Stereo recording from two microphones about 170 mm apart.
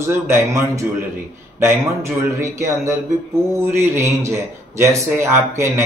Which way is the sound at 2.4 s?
15° right (ahead or behind).